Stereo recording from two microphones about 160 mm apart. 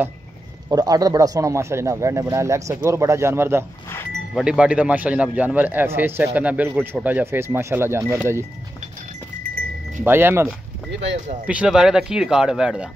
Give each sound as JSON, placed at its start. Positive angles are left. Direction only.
{"t": 0.7, "sound": "a man's voice", "side_deg": -25}
{"t": 4.3, "sound": "a man's voice", "side_deg": -5}
{"t": 10.0, "sound": "a man's voice", "side_deg": -15}